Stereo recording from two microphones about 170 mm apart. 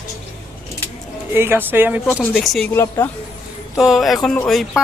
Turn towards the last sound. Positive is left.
turn(degrees=0)  # may be behind; listen again after turning